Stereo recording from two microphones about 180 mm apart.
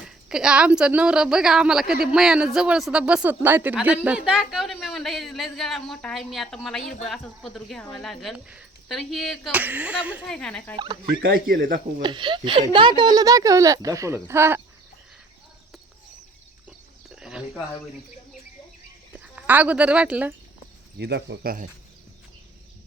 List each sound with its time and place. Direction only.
0.0 s a woman's voice: 5° right (ahead or behind)
9.6 s speech: 10° right (ahead or behind)
10.3 s a woman's voice: 5° left (ahead or behind)
11.2 s speech: 55° right (ahead or behind)
12.0 s speech: 25° right (ahead or behind)
16.6 s a sound: 5° right (ahead or behind)
19.1 s speech: 10° right (ahead or behind)
21.0 s speech: 70° right (ahead or behind); by 21.7 s 55° right (ahead or behind)